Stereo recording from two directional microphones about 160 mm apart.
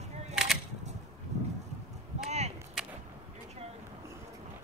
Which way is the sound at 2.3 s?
45° right (ahead or behind).